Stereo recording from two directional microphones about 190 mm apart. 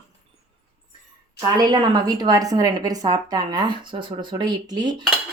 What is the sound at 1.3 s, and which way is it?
A woman's voice, 20° right (ahead or behind).